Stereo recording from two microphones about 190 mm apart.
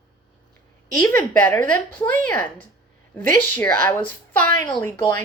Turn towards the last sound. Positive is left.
turn(degrees=10)  # may be behind; listen again after turning